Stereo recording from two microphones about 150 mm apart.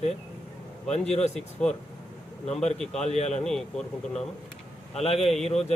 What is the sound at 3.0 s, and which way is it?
Speech, 50° left (ahead or behind).